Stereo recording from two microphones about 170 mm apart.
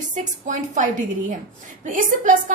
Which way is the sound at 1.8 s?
50° right (ahead or behind).